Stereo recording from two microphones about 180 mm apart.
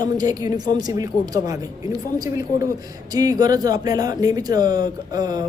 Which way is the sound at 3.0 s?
20° right (ahead or behind).